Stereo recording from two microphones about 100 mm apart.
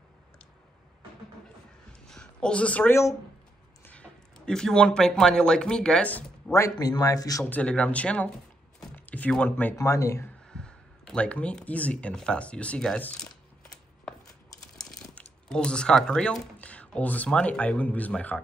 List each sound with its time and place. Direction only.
1.9 s a sound: 10° left (ahead or behind)
3.8 s speech: 15° left (ahead or behind)
6.5 s speech: 35° left (ahead or behind)
7.4 s speech: 15° left (ahead or behind)
8.9 s a sound: 15° left (ahead or behind)
9.8 s speech: 30° left (ahead or behind)
10.5 s speech: 10° left (ahead or behind)
14.8 s speech: 5° left (ahead or behind)